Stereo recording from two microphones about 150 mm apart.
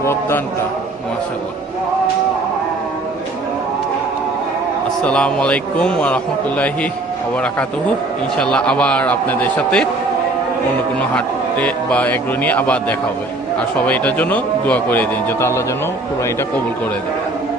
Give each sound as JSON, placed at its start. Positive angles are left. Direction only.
{"t": 0.0, "sound": "a man's voice", "side_deg": 15}
{"t": 5.0, "sound": "a man's voice", "side_deg": 5}
{"t": 8.4, "sound": "a man's voice", "side_deg": 5}
{"t": 11.1, "sound": "a man's voice", "side_deg": 10}